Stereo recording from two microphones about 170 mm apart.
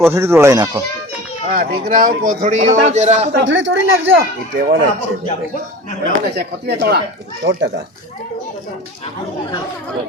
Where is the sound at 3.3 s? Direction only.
90° right.